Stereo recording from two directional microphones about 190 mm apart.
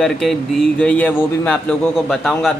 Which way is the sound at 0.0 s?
5° left (ahead or behind).